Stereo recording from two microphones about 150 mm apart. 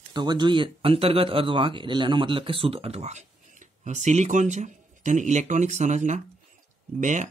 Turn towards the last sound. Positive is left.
turn(degrees=-55)  # may be behind; listen again after turning